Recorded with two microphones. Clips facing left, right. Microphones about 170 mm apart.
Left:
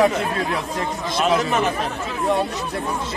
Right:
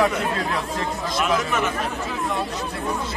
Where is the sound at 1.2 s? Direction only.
30° left (ahead or behind).